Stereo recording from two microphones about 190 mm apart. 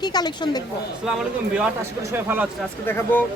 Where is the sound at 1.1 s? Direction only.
5° right (ahead or behind).